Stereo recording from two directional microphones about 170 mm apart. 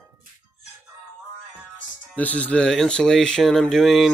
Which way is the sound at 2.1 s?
10° left (ahead or behind).